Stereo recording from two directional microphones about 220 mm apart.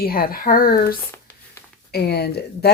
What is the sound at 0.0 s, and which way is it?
Speech, 40° left (ahead or behind).